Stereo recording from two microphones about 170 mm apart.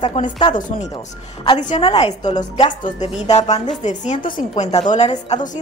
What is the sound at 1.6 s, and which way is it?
A woman's voice, 40° left (ahead or behind).